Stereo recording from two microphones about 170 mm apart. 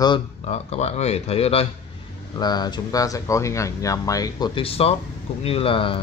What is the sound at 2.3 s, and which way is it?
Speech, 25° left (ahead or behind).